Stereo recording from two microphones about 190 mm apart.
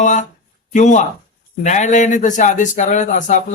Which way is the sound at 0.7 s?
40° left (ahead or behind).